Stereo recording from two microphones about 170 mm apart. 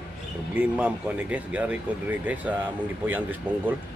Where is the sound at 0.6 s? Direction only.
10° right (ahead or behind).